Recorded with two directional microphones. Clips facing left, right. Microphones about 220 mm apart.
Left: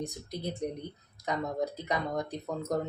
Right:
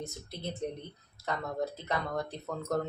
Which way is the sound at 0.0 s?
15° left (ahead or behind).